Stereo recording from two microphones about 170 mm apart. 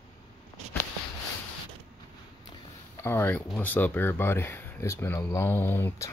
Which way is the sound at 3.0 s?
10° left (ahead or behind).